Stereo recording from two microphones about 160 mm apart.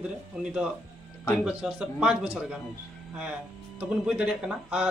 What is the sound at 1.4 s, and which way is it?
A man's voice, 5° right (ahead or behind).